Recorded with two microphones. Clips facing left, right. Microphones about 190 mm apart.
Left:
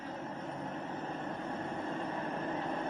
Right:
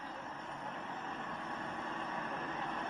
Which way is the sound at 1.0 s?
35° left (ahead or behind).